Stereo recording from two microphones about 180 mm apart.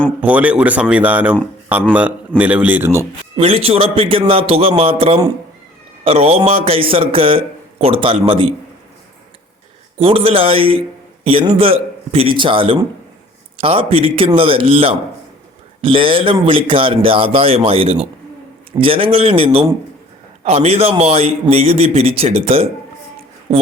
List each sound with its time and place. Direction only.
0.2 s speech: 10° right (ahead or behind)
3.3 s a man's voice: 30° right (ahead or behind)
10.0 s speech: 30° right (ahead or behind)